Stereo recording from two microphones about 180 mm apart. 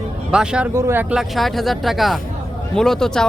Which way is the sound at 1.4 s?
Centre (ahead or behind).